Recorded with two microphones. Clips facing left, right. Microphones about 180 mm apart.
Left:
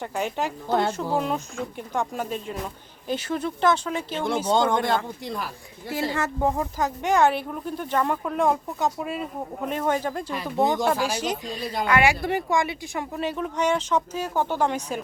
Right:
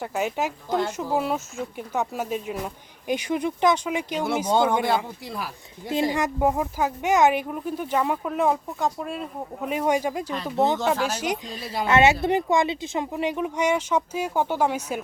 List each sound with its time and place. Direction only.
0.0 s speech: 5° right (ahead or behind)
5.9 s speech: 15° right (ahead or behind)
10.3 s speech: 10° left (ahead or behind)
11.6 s speech: 5° right (ahead or behind)
11.9 s speech: 25° right (ahead or behind); by 15.0 s 10° right (ahead or behind)